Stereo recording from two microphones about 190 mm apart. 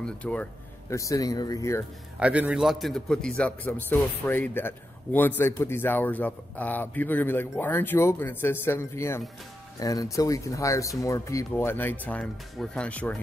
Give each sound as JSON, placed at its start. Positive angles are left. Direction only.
{"t": 0.0, "sound": "speech", "side_deg": 5}
{"t": 2.1, "sound": "a man's voice", "side_deg": -5}